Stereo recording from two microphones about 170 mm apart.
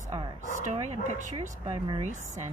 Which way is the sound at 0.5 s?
45° right (ahead or behind).